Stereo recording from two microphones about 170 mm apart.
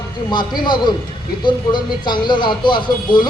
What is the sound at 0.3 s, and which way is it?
A man's voice, 25° left (ahead or behind).